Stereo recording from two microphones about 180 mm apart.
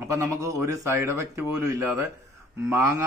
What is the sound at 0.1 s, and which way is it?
A man's voice, 15° right (ahead or behind).